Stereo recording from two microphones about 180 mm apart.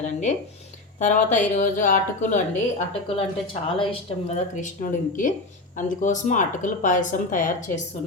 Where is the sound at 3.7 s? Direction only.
30° left (ahead or behind).